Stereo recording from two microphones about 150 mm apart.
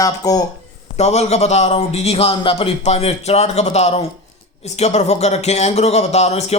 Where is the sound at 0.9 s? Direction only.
45° left (ahead or behind).